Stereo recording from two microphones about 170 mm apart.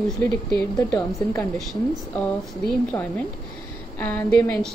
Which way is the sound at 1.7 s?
5° left (ahead or behind).